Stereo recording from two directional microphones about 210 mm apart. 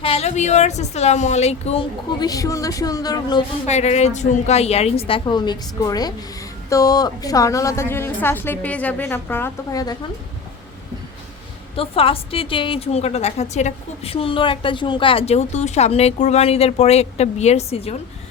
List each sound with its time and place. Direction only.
0.0 s speech: 30° left (ahead or behind)
2.1 s a woman's voice: 15° left (ahead or behind)
3.7 s a woman's voice: 30° left (ahead or behind); by 9.9 s 15° left (ahead or behind)
11.8 s a woman's voice: 25° left (ahead or behind)